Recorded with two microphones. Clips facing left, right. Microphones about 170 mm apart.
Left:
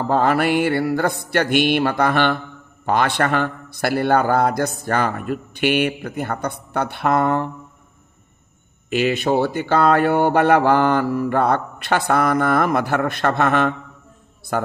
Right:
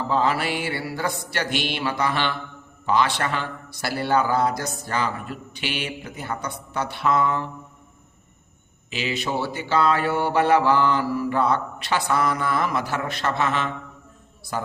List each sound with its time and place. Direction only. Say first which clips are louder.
0.0 s a man's voice: left 5 dB; 55° left (ahead or behind)
8.9 s a man's voice: left 9 dB; 55° left (ahead or behind)